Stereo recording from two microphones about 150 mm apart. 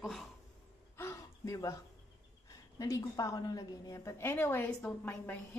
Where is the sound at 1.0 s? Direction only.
20° left (ahead or behind).